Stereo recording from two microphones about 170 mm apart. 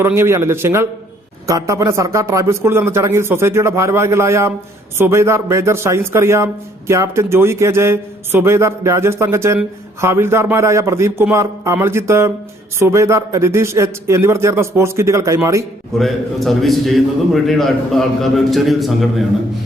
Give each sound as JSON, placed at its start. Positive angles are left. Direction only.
{"t": 0.0, "sound": "a man's voice", "side_deg": -15}
{"t": 16.0, "sound": "a man's voice", "side_deg": 0}